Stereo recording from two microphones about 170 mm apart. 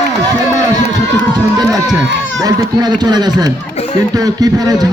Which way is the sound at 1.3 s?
25° right (ahead or behind).